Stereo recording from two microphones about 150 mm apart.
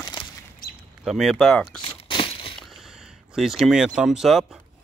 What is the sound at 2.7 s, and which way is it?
Speech, 5° right (ahead or behind).